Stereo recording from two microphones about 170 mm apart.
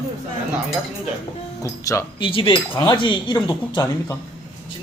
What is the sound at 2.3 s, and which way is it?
Speech, 30° left (ahead or behind).